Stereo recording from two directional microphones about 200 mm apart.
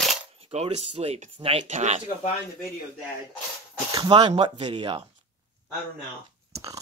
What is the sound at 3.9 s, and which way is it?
Speech, 20° right (ahead or behind).